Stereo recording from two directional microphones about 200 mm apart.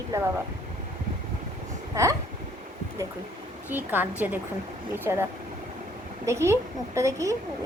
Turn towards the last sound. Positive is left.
turn(degrees=-15)  # may be behind; listen again after turning